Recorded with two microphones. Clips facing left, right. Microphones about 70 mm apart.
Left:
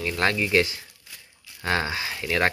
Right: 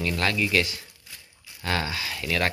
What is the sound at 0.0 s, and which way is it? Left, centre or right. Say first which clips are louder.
Speech: left 1 dB; left.